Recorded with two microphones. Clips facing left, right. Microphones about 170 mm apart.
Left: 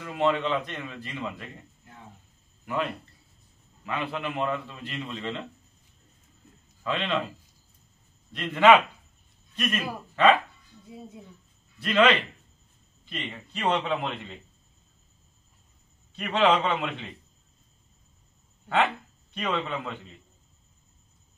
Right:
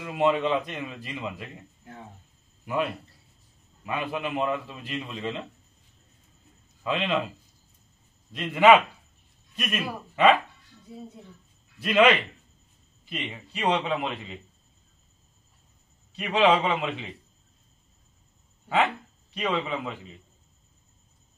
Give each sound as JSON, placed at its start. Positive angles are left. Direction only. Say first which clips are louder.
{"t": 0.0, "sound": "a man's voice", "louder": "right 2 dB", "side_deg": -15}
{"t": 2.6, "sound": "a man's voice", "louder": "right 2 dB", "side_deg": -15}
{"t": 6.8, "sound": "a man's voice", "louder": "right 2 dB", "side_deg": -15}
{"t": 8.3, "sound": "a man's voice", "louder": "right 1 dB", "side_deg": -15}
{"t": 11.8, "sound": "a man's voice", "louder": "right 2 dB", "side_deg": -10}
{"t": 16.2, "sound": "a man's voice", "louder": "right 1 dB", "side_deg": -5}
{"t": 19.3, "sound": "a man's voice", "louder": "right 1 dB", "side_deg": -5}